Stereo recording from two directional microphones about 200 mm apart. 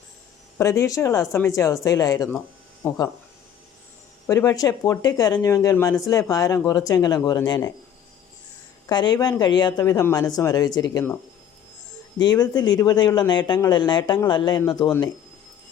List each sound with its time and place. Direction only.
0.6 s speech: 15° left (ahead or behind)
4.3 s speech: 15° left (ahead or behind)
8.9 s speech: 20° left (ahead or behind)
12.2 s speech: 20° left (ahead or behind)